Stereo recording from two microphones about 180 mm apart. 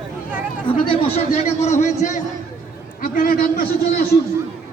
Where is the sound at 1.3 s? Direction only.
40° left (ahead or behind).